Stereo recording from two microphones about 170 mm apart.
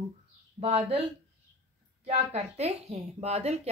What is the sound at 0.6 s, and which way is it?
Speech, 40° right (ahead or behind).